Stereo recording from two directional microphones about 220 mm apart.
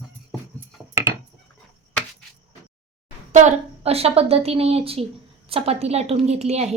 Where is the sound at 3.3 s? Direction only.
30° right (ahead or behind).